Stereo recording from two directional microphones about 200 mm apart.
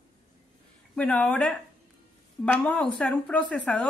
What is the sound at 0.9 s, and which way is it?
Speech, 5° left (ahead or behind).